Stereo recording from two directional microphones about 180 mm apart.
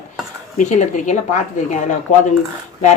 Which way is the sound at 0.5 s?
45° left (ahead or behind).